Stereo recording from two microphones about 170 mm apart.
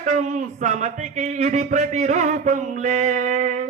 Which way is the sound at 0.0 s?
45° right (ahead or behind).